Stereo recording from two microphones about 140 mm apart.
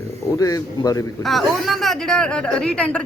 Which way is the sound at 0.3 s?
25° left (ahead or behind).